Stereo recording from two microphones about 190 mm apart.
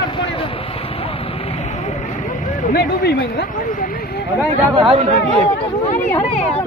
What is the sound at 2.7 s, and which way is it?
Speech, 55° left (ahead or behind).